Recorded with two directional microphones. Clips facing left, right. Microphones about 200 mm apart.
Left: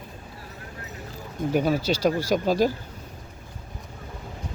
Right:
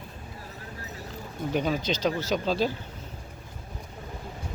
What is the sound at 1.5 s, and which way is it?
Speech, 10° left (ahead or behind).